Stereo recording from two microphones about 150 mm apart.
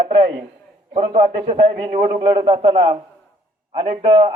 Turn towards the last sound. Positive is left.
turn(degrees=-40)  # may be behind; listen again after turning